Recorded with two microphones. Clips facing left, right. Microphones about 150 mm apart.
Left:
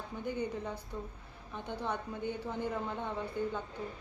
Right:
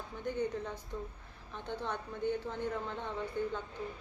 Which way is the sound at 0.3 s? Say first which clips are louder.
Right 1 dB; 10° left (ahead or behind).